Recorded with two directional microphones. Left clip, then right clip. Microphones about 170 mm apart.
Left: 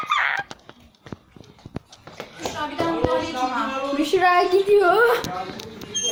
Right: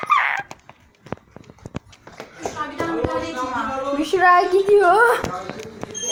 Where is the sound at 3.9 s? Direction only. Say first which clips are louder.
Right 3 dB; 5° left (ahead or behind).